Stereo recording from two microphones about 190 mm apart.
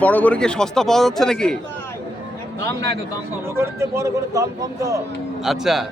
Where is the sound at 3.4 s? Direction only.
15° right (ahead or behind).